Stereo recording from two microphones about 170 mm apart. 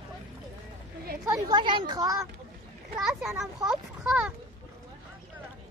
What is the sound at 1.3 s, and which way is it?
A woman's voice, 20° right (ahead or behind).